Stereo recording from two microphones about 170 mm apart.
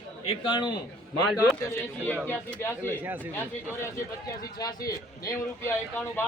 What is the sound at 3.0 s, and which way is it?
Speech, 10° right (ahead or behind).